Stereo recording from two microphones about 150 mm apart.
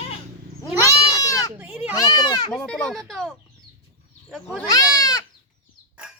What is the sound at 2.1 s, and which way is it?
Speech, 30° left (ahead or behind).